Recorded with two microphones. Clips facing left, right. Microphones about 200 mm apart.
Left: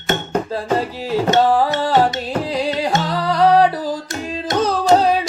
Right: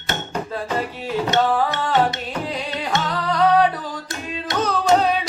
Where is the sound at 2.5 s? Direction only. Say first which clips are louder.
Left 7 dB; 35° left (ahead or behind).